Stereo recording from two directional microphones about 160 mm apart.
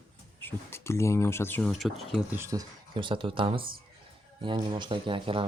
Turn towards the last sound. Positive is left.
turn(degrees=-35)  # may be behind; listen again after turning